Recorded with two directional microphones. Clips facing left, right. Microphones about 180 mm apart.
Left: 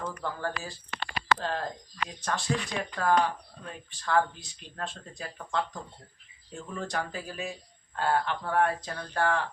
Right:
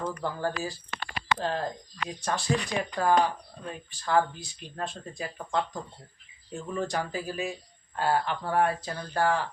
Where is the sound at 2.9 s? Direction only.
15° right (ahead or behind).